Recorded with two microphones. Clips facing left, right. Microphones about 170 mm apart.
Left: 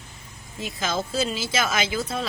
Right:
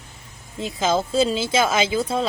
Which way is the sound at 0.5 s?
30° right (ahead or behind).